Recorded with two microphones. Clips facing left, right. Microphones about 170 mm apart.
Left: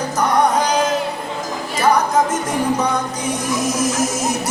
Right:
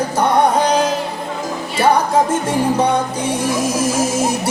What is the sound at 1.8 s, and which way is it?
Music, 30° right (ahead or behind).